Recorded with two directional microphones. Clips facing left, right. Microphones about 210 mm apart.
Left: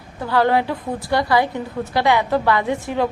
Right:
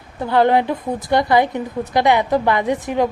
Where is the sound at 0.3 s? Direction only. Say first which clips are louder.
Right 2 dB; 20° right (ahead or behind).